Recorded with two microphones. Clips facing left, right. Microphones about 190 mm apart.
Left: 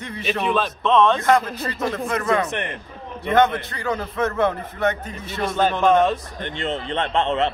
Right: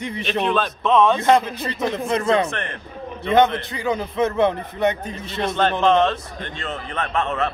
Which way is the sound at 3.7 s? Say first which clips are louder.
Right 2 dB; 10° right (ahead or behind).